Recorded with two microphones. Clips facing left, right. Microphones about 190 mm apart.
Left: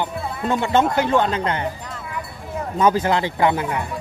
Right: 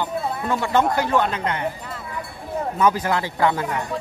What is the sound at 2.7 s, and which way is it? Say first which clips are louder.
Speech: left 3 dB; 25° left (ahead or behind).